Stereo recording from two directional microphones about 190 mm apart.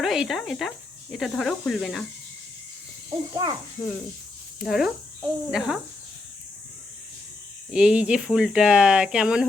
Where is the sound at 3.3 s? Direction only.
25° right (ahead or behind).